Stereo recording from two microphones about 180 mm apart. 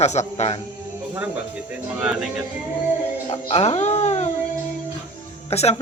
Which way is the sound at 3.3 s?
35° left (ahead or behind).